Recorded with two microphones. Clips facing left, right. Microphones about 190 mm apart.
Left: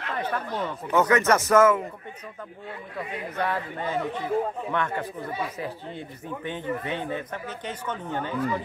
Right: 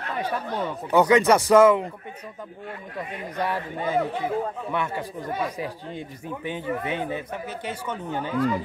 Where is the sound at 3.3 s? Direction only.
10° right (ahead or behind).